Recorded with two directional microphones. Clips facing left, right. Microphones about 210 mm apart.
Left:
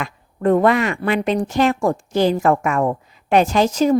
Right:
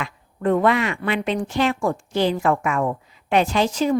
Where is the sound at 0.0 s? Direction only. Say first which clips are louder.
Left 4 dB; 45° left (ahead or behind).